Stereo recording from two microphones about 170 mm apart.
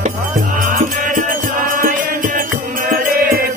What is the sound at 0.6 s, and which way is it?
Music, 55° right (ahead or behind).